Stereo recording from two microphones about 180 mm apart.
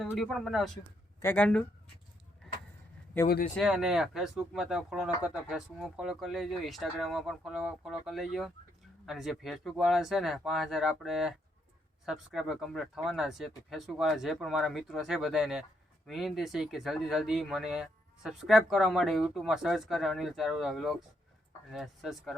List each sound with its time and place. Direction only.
0.1 s speech: 5° left (ahead or behind)
1.2 s speech: 10° left (ahead or behind)
3.2 s speech: 60° left (ahead or behind)
3.6 s speech: 5° right (ahead or behind)